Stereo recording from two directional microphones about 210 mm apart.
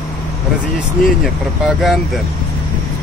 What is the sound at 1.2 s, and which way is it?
Speech, centre (ahead or behind).